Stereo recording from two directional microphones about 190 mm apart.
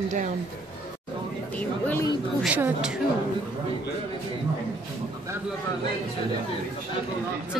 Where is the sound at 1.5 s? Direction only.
10° left (ahead or behind).